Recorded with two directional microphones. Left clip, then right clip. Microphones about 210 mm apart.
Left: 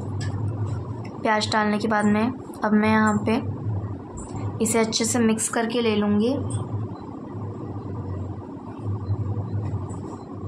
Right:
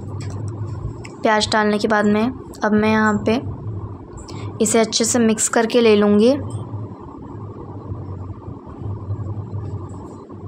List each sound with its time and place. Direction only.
1.2 s a woman's voice: 25° right (ahead or behind)
4.6 s a woman's voice: 20° right (ahead or behind)